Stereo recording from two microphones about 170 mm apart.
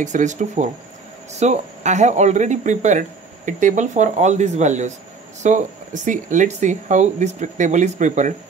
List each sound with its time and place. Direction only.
0.0 s speech: 45° right (ahead or behind)